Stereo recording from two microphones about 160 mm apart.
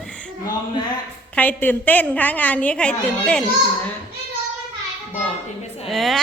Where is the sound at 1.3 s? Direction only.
10° left (ahead or behind).